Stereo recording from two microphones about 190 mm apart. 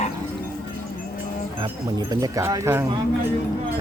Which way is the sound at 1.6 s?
20° right (ahead or behind).